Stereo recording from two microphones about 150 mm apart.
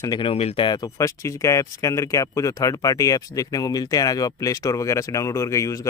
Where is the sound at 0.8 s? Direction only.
20° left (ahead or behind).